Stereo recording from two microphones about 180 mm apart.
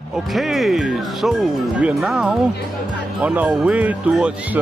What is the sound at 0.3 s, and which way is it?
Speech, centre (ahead or behind).